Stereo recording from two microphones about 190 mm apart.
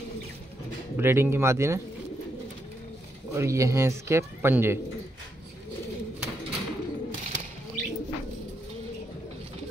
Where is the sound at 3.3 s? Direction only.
15° right (ahead or behind).